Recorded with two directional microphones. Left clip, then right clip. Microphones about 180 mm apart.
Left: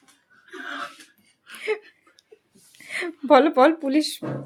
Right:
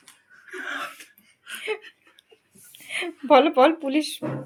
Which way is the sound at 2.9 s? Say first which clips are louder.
Left 1 dB; 25° left (ahead or behind).